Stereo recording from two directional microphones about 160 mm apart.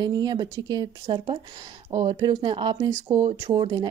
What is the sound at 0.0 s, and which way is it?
Speech, 25° right (ahead or behind).